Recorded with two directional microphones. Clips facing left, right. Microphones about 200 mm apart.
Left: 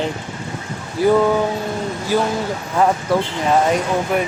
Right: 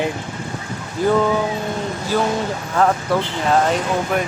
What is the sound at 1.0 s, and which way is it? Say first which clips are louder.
Speech: left 3 dB; 10° left (ahead or behind).